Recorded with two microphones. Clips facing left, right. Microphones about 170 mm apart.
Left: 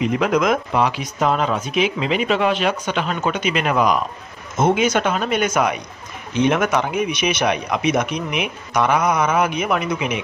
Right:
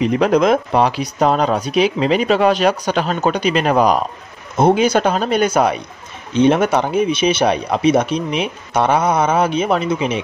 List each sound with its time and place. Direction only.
0.0 s speech: 35° right (ahead or behind)